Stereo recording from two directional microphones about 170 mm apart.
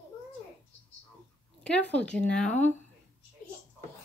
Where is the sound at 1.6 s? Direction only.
5° left (ahead or behind).